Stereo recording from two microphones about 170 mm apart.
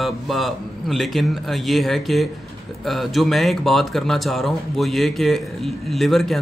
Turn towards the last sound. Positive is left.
turn(degrees=0)  # may be behind; listen again after turning